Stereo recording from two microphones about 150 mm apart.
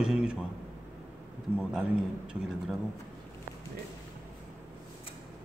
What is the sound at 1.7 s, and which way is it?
Speech, 5° right (ahead or behind).